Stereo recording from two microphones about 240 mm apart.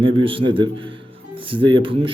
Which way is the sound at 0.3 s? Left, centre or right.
Right.